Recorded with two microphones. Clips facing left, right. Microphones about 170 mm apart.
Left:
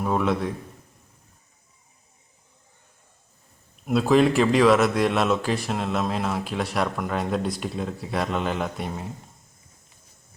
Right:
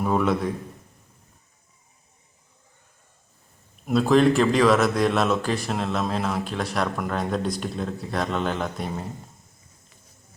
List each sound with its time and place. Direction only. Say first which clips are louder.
0.0 s speech: right 1 dB; centre (ahead or behind)
3.8 s speech: right 1 dB; centre (ahead or behind)